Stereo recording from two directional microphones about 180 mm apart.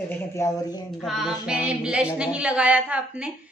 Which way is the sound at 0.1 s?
15° left (ahead or behind).